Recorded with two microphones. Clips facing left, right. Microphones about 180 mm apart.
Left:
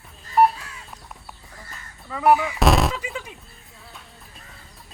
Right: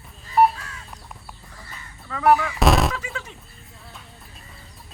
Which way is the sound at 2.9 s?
15° left (ahead or behind).